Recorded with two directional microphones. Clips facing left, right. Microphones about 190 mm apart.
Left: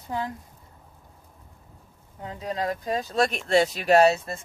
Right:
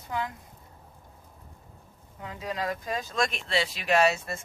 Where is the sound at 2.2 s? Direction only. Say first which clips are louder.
Left 3 dB; 30° left (ahead or behind).